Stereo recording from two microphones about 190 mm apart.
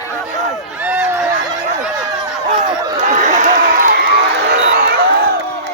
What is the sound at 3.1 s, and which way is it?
Crowd, 40° right (ahead or behind).